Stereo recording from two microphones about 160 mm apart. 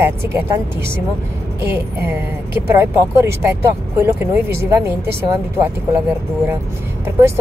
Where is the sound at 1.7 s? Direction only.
15° right (ahead or behind).